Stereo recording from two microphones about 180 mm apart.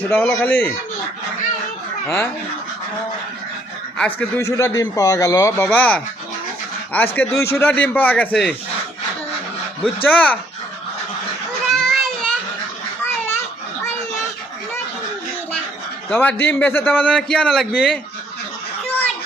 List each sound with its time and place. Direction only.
0.1 s a man's voice: 10° left (ahead or behind)
3.9 s a man's voice: 10° left (ahead or behind)
10.0 s a man's voice: 10° left (ahead or behind)
11.7 s children playing: centre (ahead or behind)
13.0 s children playing: 10° left (ahead or behind)
16.0 s a man's voice: 10° left (ahead or behind)